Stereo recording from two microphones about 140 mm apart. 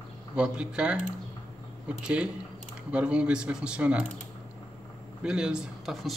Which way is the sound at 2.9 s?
10° right (ahead or behind).